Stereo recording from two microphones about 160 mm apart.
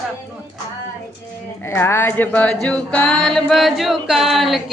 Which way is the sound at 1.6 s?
15° left (ahead or behind).